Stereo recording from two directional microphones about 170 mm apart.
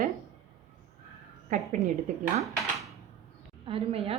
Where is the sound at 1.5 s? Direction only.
50° right (ahead or behind).